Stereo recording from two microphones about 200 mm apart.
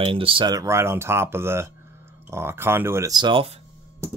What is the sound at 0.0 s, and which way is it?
Speech, 25° right (ahead or behind).